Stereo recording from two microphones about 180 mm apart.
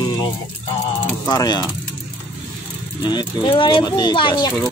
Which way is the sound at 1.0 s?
20° left (ahead or behind).